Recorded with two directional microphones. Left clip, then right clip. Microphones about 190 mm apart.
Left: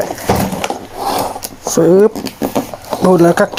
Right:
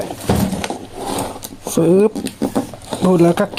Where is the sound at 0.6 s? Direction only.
15° right (ahead or behind).